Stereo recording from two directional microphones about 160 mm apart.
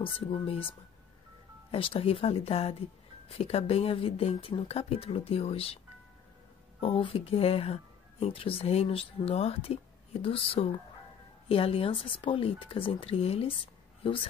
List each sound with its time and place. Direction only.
0.0 s speech: 35° left (ahead or behind)
1.7 s speech: 35° left (ahead or behind)
6.8 s speech: 35° left (ahead or behind)